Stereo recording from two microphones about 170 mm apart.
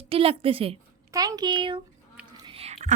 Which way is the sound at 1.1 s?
20° right (ahead or behind).